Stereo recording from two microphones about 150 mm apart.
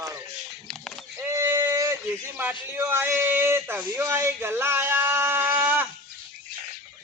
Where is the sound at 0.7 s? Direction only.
5° left (ahead or behind).